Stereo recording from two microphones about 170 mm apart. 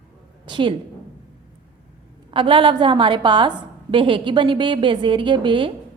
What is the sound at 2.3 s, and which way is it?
A woman's voice, 30° right (ahead or behind).